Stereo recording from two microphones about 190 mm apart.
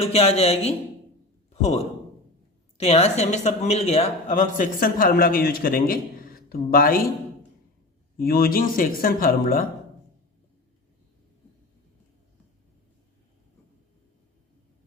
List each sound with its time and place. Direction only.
0.0 s a man's voice: 30° left (ahead or behind); by 7.0 s 50° left (ahead or behind)
8.2 s speech: 50° left (ahead or behind)